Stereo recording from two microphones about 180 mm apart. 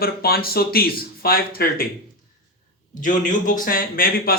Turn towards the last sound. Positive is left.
turn(degrees=55)  # may be behind; listen again after turning